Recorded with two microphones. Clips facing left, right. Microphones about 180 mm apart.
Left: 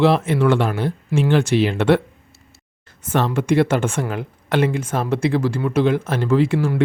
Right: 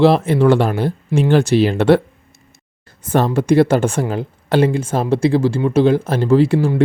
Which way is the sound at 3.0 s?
35° right (ahead or behind).